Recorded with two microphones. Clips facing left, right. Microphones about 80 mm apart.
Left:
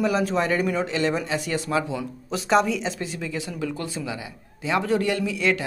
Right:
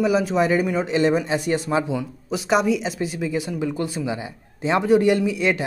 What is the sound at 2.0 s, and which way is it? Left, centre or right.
Speech, centre.